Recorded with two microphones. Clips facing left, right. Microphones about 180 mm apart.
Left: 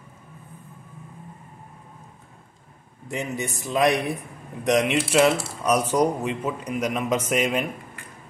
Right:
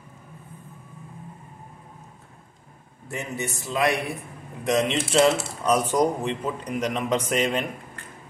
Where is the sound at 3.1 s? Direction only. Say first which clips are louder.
Left 2 dB; 15° left (ahead or behind).